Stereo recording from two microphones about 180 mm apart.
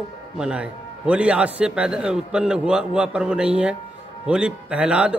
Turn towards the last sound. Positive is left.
turn(degrees=-5)  # may be behind; listen again after turning